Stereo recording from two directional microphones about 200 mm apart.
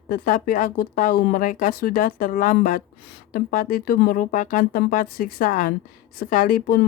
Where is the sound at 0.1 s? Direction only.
45° left (ahead or behind).